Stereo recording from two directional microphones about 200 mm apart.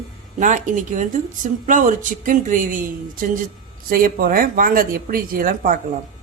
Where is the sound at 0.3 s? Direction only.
40° right (ahead or behind).